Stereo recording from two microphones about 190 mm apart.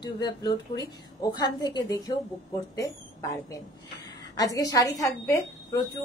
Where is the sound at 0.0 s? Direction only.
20° left (ahead or behind).